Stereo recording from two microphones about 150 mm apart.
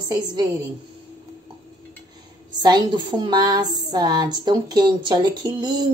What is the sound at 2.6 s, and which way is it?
Speech, 30° right (ahead or behind).